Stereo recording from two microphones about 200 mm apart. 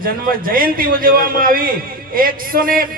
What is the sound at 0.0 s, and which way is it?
A man's voice, 45° right (ahead or behind).